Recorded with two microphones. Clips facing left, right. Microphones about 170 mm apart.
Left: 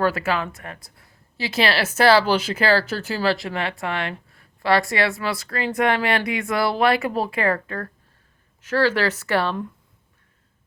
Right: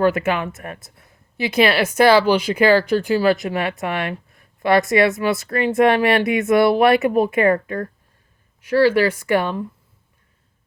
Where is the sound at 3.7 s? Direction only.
20° right (ahead or behind).